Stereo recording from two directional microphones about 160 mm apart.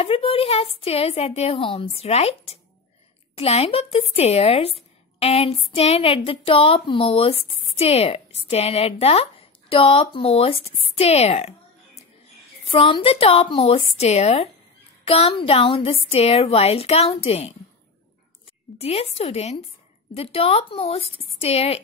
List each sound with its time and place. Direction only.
0.0 s speech: 35° left (ahead or behind)
12.6 s speech: 35° left (ahead or behind)
18.8 s speech: 40° left (ahead or behind)